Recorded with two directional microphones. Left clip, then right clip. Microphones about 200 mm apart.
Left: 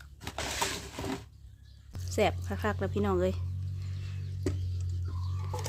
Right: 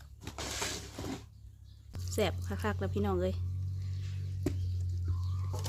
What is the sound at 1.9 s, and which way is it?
Speech, 5° left (ahead or behind).